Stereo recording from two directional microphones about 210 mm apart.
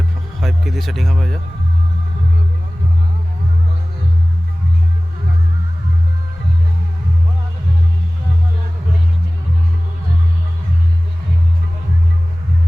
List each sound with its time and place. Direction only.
0.4 s speech: centre (ahead or behind)